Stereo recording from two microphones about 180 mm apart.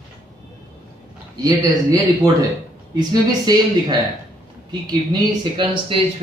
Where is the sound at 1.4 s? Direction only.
20° right (ahead or behind).